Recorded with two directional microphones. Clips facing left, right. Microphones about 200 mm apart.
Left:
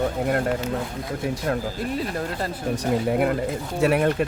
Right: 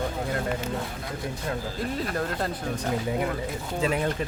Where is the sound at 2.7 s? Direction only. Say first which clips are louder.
Left 7 dB; 65° left (ahead or behind).